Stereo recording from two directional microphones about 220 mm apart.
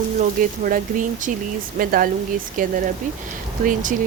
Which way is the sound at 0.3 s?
40° right (ahead or behind).